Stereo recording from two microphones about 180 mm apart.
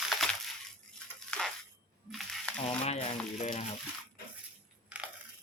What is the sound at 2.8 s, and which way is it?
Speech, 35° left (ahead or behind).